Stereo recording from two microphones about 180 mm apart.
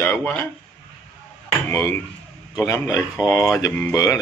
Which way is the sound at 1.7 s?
15° left (ahead or behind).